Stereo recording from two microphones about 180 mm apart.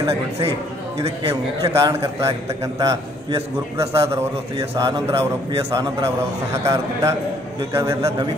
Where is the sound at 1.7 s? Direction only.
15° right (ahead or behind).